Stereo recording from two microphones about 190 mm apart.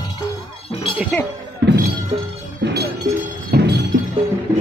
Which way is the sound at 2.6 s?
60° right (ahead or behind).